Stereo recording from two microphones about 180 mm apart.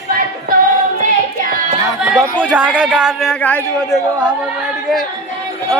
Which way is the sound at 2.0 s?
10° right (ahead or behind).